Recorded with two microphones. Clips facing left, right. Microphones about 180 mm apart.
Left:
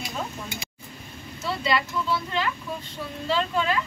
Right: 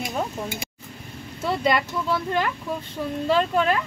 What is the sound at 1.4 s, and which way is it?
Speech, 50° right (ahead or behind).